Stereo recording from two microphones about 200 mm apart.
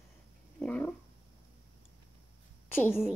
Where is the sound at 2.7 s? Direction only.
10° left (ahead or behind).